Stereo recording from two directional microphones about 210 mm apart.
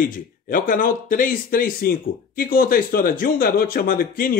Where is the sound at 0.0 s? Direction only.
40° left (ahead or behind).